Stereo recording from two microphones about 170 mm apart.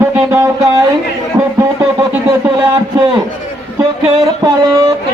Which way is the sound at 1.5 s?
20° right (ahead or behind).